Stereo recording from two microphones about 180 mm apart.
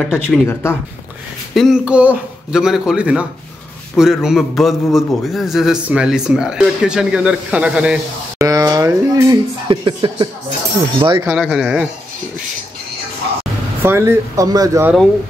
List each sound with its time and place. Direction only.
0.0 s a man's voice: centre (ahead or behind)
0.5 s speech: 15° left (ahead or behind)
1.5 s a man's voice: centre (ahead or behind)
8.4 s speech: 20° right (ahead or behind)
11.2 s a man's voice: 5° right (ahead or behind)
13.8 s speech: 15° right (ahead or behind)